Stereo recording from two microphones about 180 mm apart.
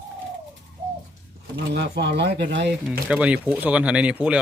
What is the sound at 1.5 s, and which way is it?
Speech, 70° right (ahead or behind).